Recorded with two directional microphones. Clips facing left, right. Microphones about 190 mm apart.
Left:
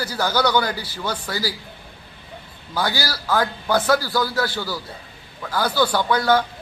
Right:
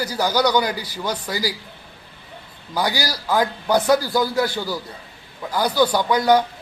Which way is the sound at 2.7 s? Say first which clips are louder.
Right 1 dB; 15° right (ahead or behind).